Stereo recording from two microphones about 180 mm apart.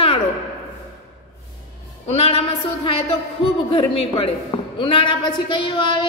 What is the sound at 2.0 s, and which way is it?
A woman's voice, 35° left (ahead or behind).